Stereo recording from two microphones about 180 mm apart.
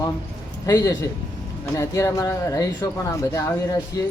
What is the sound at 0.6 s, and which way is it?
Speech, 20° left (ahead or behind).